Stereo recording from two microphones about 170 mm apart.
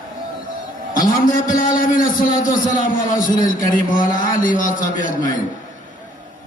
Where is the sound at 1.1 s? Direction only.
50° left (ahead or behind).